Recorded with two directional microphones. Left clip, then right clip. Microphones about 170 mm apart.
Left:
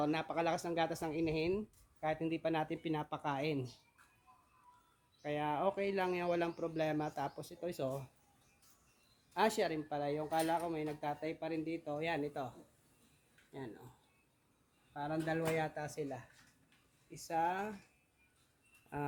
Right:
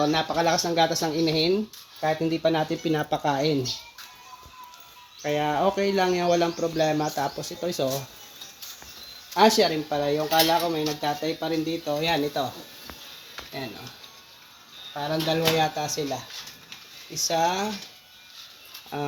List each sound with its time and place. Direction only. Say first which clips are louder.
0.0 s speech: right 13 dB; 20° left (ahead or behind)
1.1 s speech: right 13 dB; 5° left (ahead or behind)
5.2 s speech: right 12 dB; 5° left (ahead or behind)
9.3 s speech: right 15 dB; 5° left (ahead or behind)
15.3 s speech: right 15 dB; 10° left (ahead or behind)
15.8 s speech: right 14 dB; 25° left (ahead or behind)
17.2 s speech: right 12 dB; 25° left (ahead or behind)
18.9 s speech: right 11 dB; 45° left (ahead or behind)